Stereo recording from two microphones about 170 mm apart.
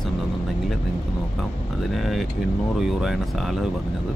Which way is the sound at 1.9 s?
Centre (ahead or behind).